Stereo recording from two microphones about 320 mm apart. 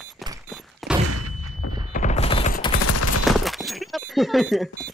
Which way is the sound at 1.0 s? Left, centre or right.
Right.